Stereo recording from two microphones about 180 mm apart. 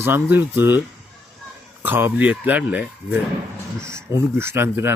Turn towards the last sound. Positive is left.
turn(degrees=-15)  # may be behind; listen again after turning